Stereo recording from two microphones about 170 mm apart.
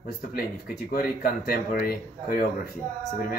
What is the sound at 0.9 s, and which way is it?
Speech, 65° left (ahead or behind).